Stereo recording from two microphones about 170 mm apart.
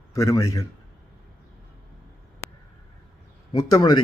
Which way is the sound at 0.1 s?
20° left (ahead or behind).